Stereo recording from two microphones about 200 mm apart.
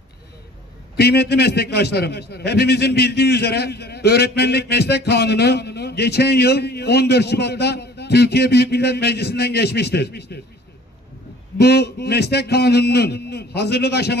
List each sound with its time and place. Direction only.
0.9 s a man's voice: 55° left (ahead or behind)
11.5 s a man's voice: 55° left (ahead or behind)